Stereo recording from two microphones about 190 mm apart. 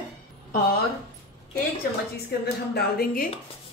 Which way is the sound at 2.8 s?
55° left (ahead or behind).